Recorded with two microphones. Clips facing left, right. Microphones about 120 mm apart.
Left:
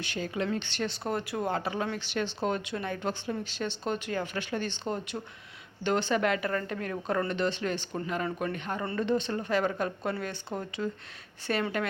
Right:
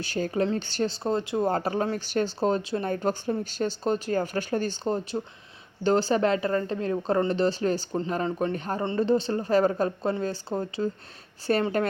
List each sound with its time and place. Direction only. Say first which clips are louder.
0.0 s speech: right 6 dB; 35° right (ahead or behind)
1.5 s speech: right 5 dB; 40° right (ahead or behind)